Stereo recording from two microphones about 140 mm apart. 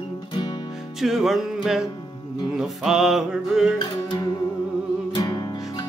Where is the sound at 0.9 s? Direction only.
Centre (ahead or behind).